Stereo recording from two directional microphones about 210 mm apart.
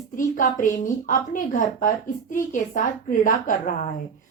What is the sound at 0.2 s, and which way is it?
A child's voice, 40° left (ahead or behind).